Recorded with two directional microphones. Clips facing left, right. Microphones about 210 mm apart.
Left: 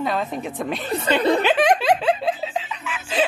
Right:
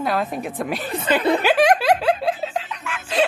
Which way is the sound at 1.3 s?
5° right (ahead or behind).